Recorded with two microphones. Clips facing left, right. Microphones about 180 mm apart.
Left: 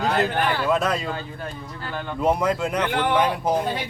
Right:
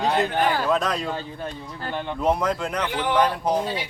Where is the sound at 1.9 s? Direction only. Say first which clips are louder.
Right 1 dB; 20° right (ahead or behind).